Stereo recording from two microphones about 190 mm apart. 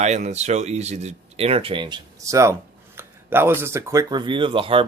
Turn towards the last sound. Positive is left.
turn(degrees=-25)  # may be behind; listen again after turning